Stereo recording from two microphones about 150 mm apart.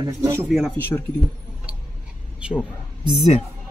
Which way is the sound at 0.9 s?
15° left (ahead or behind).